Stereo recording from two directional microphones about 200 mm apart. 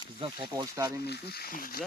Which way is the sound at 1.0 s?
55° left (ahead or behind).